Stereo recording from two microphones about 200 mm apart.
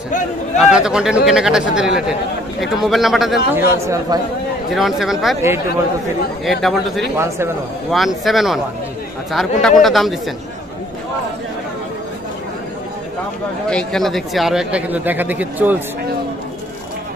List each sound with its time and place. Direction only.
0.6 s speech: 5° right (ahead or behind)
3.6 s speech: 15° right (ahead or behind)
4.7 s speech: centre (ahead or behind)
6.4 s speech: centre (ahead or behind)
7.2 s speech: 15° right (ahead or behind)
7.9 s speech: centre (ahead or behind)
13.7 s speech: 5° left (ahead or behind)